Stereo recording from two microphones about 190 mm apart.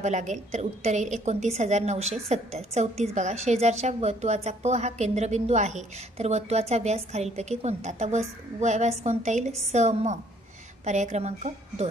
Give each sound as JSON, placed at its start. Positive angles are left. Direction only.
{"t": 0.0, "sound": "a woman's voice", "side_deg": -40}